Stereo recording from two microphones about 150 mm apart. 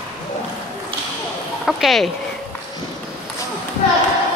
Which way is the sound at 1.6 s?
Centre (ahead or behind).